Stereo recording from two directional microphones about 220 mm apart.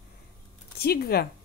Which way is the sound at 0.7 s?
45° left (ahead or behind).